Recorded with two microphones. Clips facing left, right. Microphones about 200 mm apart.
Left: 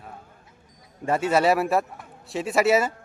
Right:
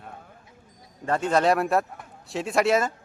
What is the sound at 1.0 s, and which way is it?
A man's voice, 10° left (ahead or behind).